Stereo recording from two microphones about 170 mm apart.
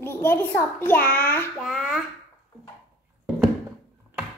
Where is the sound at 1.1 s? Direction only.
10° left (ahead or behind).